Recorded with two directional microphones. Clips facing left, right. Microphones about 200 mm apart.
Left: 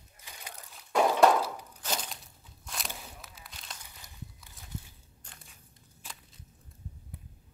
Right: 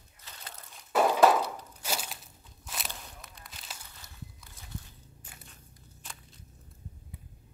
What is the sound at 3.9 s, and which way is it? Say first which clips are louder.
Walk: even; 15° left (ahead or behind).